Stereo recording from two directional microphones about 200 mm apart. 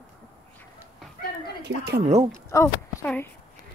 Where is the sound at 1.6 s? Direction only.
55° right (ahead or behind).